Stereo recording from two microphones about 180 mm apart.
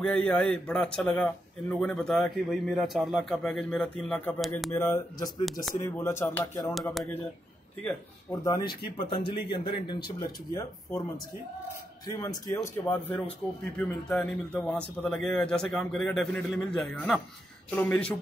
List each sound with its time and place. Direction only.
0.0 s a man's voice: 5° left (ahead or behind)
4.7 s speech: 15° left (ahead or behind)
6.7 s a man's voice: centre (ahead or behind)
8.5 s speech: 20° left (ahead or behind)
12.1 s a man's voice: 15° left (ahead or behind)